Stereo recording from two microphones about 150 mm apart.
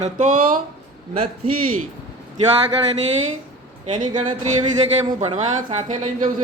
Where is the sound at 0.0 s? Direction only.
55° right (ahead or behind).